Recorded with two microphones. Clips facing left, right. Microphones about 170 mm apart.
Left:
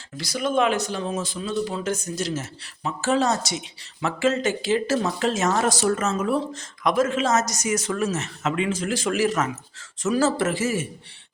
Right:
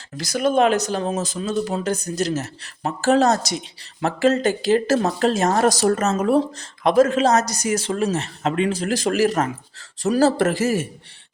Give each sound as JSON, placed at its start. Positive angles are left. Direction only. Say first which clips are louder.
{"t": 0.2, "sound": "speech", "louder": "right 4 dB", "side_deg": -45}